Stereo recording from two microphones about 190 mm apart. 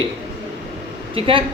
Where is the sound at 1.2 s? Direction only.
30° right (ahead or behind).